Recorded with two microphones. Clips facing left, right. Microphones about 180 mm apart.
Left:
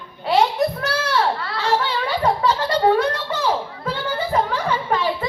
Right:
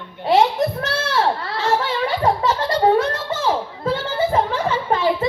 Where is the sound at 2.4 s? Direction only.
25° right (ahead or behind).